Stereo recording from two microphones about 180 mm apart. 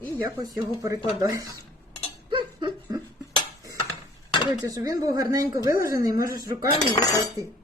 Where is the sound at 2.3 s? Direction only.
25° right (ahead or behind).